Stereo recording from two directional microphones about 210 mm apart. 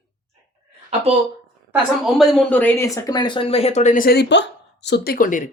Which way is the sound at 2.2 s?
Centre (ahead or behind).